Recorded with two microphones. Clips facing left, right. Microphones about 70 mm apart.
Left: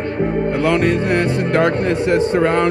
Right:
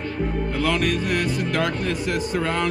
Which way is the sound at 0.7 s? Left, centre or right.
Left.